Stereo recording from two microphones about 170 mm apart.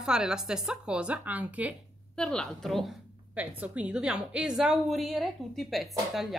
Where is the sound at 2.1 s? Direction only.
5° left (ahead or behind).